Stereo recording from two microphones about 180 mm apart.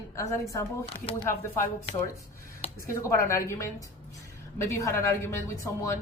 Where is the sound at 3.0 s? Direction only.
15° left (ahead or behind).